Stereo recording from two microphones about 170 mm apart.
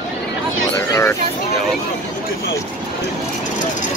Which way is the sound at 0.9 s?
15° left (ahead or behind).